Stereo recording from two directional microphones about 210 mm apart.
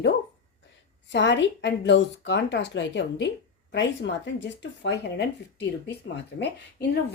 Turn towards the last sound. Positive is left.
turn(degrees=55)  # may be behind; listen again after turning